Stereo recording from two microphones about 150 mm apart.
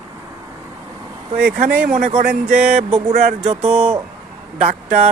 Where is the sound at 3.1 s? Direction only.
60° right (ahead or behind).